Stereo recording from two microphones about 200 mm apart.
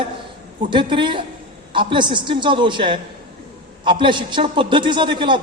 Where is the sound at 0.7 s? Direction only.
25° right (ahead or behind).